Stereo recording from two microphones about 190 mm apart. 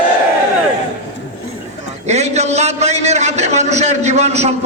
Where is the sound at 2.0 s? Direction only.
35° right (ahead or behind).